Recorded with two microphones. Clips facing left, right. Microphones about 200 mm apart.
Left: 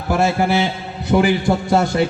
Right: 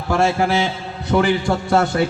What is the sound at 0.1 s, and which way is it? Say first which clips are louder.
A man's voice: left 1 dB; 5° left (ahead or behind).